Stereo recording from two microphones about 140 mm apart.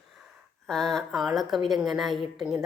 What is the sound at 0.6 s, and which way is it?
A woman's voice, 5° left (ahead or behind).